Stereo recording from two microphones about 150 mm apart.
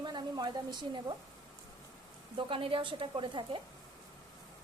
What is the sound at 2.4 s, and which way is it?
A woman's voice, 35° right (ahead or behind).